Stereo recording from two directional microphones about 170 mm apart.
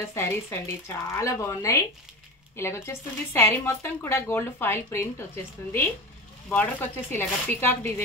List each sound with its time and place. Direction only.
0.0 s speech: 15° left (ahead or behind)
6.5 s speech: 10° left (ahead or behind)